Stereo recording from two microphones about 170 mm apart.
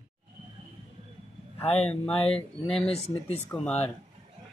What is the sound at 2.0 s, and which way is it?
Speech, 35° left (ahead or behind).